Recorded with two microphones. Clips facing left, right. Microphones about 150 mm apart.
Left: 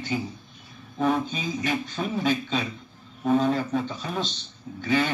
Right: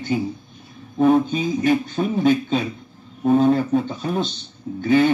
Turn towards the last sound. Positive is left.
turn(degrees=-45)  # may be behind; listen again after turning